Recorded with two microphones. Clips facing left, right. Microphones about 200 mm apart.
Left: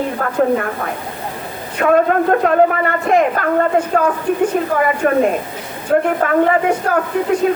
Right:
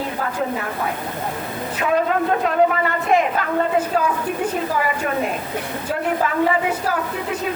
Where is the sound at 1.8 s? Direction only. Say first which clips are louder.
Left 6 dB; 50° left (ahead or behind).